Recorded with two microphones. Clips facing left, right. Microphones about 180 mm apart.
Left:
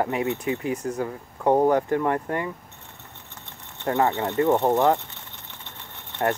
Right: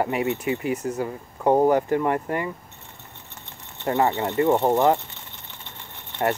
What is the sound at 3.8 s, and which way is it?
Speech, 5° right (ahead or behind).